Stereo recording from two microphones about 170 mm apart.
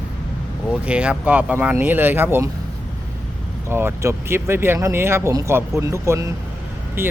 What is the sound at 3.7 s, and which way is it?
Speech, 15° right (ahead or behind).